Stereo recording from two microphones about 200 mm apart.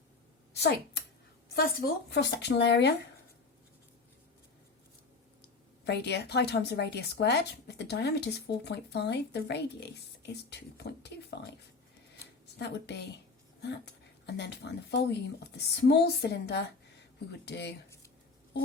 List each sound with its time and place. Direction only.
1.5 s a woman's voice: 55° left (ahead or behind)
5.8 s a woman's voice: 55° left (ahead or behind)
12.5 s a woman's voice: 60° left (ahead or behind)